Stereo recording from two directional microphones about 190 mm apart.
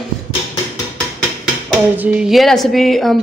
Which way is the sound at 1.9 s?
5° right (ahead or behind).